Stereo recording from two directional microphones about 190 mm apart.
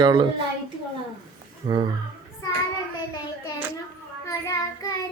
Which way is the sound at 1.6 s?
25° right (ahead or behind).